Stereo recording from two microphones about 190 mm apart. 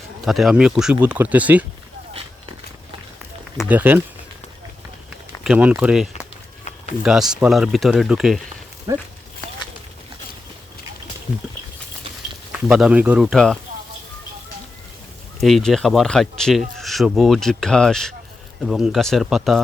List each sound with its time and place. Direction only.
0.3 s speech: centre (ahead or behind)
3.7 s speech: 10° right (ahead or behind)
5.4 s speech: 5° right (ahead or behind)
8.9 s speech: 20° right (ahead or behind)
12.5 s speech: 5° right (ahead or behind)
15.4 s speech: centre (ahead or behind)